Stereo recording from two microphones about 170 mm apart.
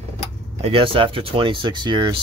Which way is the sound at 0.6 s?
35° right (ahead or behind).